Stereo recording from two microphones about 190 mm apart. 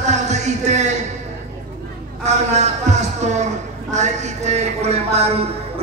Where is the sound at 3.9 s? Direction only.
35° right (ahead or behind).